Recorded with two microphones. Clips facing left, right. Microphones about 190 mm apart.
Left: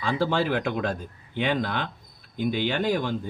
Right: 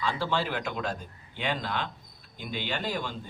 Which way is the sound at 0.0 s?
50° left (ahead or behind).